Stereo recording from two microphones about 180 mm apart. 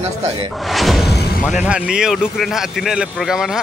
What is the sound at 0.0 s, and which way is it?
Speech, 35° right (ahead or behind).